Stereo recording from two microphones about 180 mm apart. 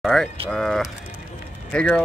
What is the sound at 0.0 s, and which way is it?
Speech, centre (ahead or behind).